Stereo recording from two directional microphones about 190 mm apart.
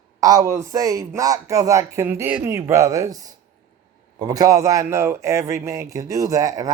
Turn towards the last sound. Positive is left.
turn(degrees=-20)  # may be behind; listen again after turning